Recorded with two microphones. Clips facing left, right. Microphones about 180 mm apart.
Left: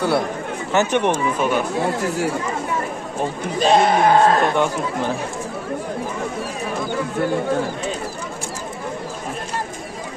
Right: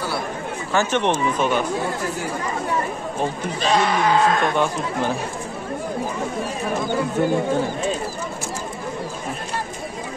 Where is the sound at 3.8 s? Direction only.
50° left (ahead or behind).